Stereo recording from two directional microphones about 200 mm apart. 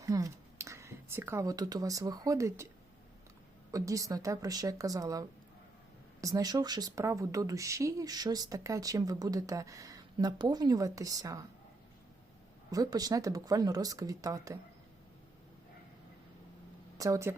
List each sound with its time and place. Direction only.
0.0 s speech: 15° right (ahead or behind)
3.7 s speech: 15° right (ahead or behind)
6.2 s speech: 20° right (ahead or behind)
12.7 s speech: 20° right (ahead or behind)
17.0 s speech: 15° right (ahead or behind)